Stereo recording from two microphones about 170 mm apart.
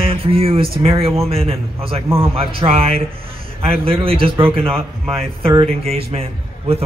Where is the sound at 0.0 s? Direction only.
35° right (ahead or behind).